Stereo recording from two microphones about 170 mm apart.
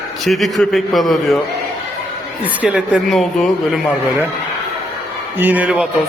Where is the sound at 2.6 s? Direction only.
5° right (ahead or behind).